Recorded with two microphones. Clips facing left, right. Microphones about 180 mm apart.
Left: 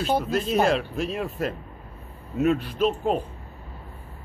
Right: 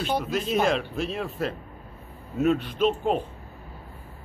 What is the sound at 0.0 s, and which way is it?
Speech, centre (ahead or behind).